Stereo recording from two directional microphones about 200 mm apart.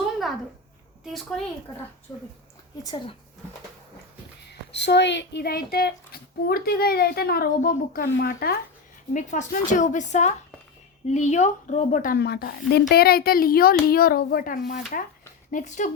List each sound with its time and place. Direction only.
2.8 s speech: 25° left (ahead or behind)
4.7 s a woman's voice: 60° left (ahead or behind)
9.1 s a woman's voice: 40° left (ahead or behind)